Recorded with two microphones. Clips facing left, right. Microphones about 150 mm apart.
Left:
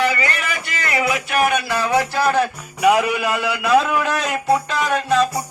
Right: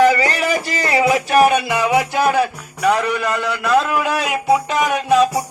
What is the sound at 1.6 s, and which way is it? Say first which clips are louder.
Music: right 2 dB; 15° right (ahead or behind).